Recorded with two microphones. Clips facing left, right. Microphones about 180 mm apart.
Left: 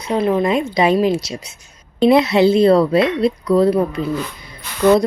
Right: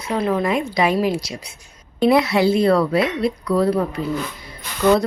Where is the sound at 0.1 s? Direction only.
20° left (ahead or behind).